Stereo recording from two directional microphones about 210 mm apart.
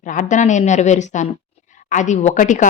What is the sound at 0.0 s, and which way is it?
Speech, 40° left (ahead or behind).